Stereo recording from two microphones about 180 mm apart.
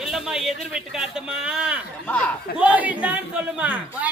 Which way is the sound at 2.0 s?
10° left (ahead or behind).